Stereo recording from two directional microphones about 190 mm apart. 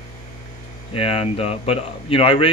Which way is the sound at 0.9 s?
30° left (ahead or behind).